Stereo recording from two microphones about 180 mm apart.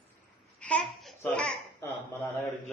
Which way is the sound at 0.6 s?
5° left (ahead or behind).